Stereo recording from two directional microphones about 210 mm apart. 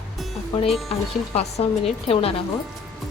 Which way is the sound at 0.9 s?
30° left (ahead or behind).